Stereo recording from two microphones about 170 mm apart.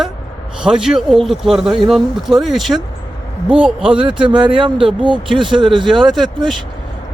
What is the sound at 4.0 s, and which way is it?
Speech, 30° right (ahead or behind).